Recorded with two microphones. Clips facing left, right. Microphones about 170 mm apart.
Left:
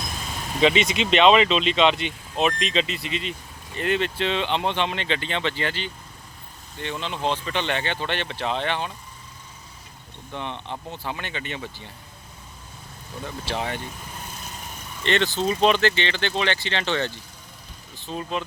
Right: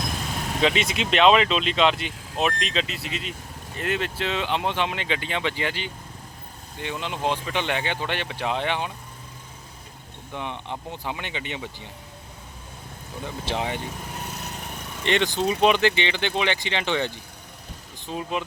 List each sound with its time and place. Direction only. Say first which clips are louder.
0.6 s speech: left 4 dB; centre (ahead or behind)
10.3 s speech: even; 10° right (ahead or behind)
13.2 s speech: right 1 dB; 15° right (ahead or behind)
14.3 s lawn mower: right 3 dB; 70° right (ahead or behind)
15.0 s speech: even; 15° right (ahead or behind)